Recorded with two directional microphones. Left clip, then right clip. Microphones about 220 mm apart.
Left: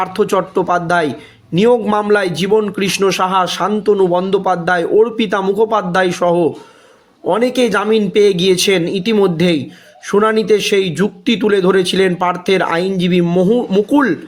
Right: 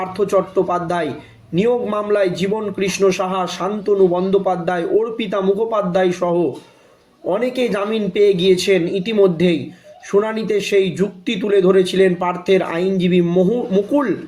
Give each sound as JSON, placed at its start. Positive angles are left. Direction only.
{"t": 0.0, "sound": "a man's voice", "side_deg": 45}